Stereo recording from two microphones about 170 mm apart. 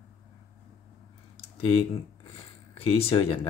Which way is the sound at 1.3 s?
35° left (ahead or behind).